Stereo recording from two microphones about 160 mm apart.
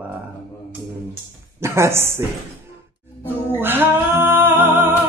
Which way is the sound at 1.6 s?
15° right (ahead or behind).